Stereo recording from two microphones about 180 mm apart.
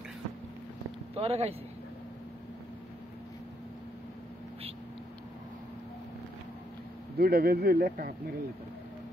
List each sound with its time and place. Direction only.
1.1 s speech: 35° right (ahead or behind)
7.2 s speech: 60° right (ahead or behind)